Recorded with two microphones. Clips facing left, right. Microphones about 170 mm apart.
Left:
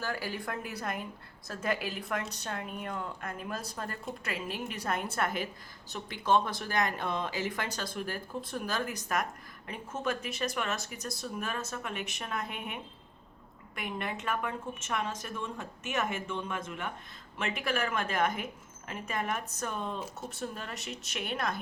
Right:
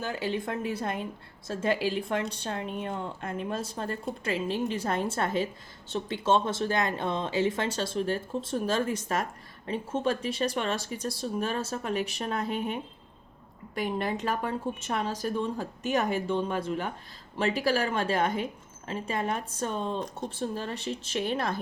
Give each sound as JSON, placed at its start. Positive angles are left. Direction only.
{"t": 0.0, "sound": "speech", "side_deg": -25}